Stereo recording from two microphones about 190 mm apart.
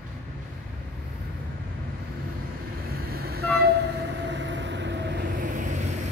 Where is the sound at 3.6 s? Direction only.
60° right (ahead or behind).